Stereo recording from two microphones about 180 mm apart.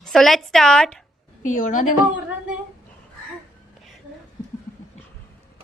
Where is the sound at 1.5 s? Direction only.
45° left (ahead or behind).